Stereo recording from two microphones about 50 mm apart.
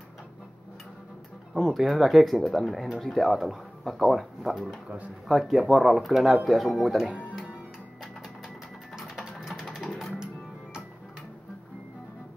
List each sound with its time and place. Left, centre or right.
1.5 s speech: centre
4.8 s speech: right
5.3 s speech: centre
9.0 s sewing machine: centre
9.5 s a sound: centre
10.1 s music: centre